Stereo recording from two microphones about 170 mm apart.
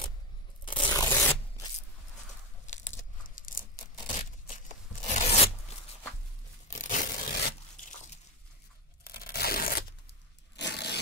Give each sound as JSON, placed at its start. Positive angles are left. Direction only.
{"t": 0.7, "sound": "scrape", "side_deg": 30}
{"t": 1.0, "sound": "zipper", "side_deg": 15}
{"t": 2.6, "sound": "crushing", "side_deg": 45}
{"t": 6.7, "sound": "a sound", "side_deg": 50}
{"t": 9.0, "sound": "tearing", "side_deg": 65}
{"t": 10.5, "sound": "a sound", "side_deg": 85}